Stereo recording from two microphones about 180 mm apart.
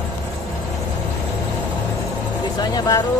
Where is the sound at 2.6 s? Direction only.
20° left (ahead or behind).